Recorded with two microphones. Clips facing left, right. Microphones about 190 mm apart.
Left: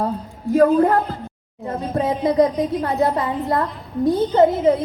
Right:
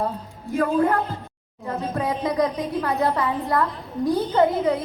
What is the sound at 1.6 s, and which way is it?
Speech, 25° left (ahead or behind).